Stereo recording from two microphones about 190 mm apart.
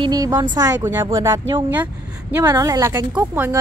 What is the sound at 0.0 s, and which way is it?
A woman's voice, 20° right (ahead or behind).